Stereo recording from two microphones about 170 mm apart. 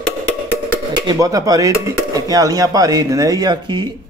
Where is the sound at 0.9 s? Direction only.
25° right (ahead or behind).